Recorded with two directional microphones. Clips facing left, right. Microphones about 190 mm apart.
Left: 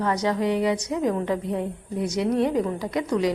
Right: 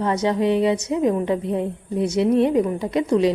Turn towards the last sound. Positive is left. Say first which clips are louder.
# right 5 dB
turn(degrees=-25)  # may be behind; listen again after turning